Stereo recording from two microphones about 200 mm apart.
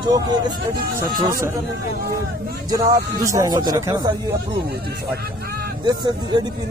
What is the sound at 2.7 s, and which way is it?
Speech, 15° right (ahead or behind).